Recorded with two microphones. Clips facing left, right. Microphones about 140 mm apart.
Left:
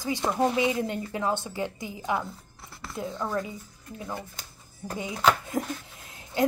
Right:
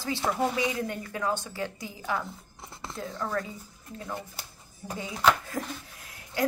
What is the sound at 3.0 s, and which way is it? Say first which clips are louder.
Speech: left 3 dB; 20° left (ahead or behind).